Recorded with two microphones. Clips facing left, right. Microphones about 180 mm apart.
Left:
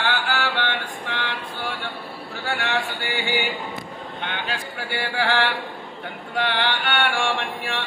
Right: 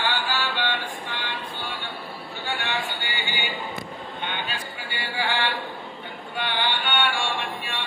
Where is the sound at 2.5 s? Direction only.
90° left.